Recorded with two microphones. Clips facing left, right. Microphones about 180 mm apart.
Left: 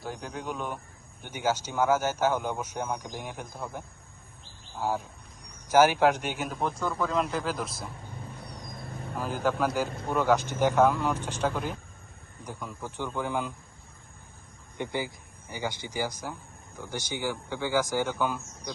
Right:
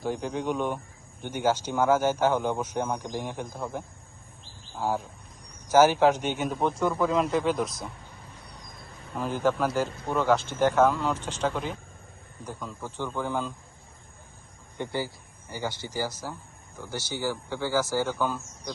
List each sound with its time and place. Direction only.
0.2 s a man's voice: 5° left (ahead or behind)
5.7 s speech: 10° left (ahead or behind)
6.7 s speech: 15° right (ahead or behind)
7.1 s a man's voice: centre (ahead or behind)
9.1 s speech: 5° left (ahead or behind)
14.8 s speech: 15° left (ahead or behind)